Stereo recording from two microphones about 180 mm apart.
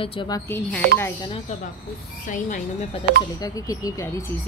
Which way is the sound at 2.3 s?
45° left (ahead or behind).